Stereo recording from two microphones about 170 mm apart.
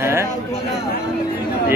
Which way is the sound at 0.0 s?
15° right (ahead or behind).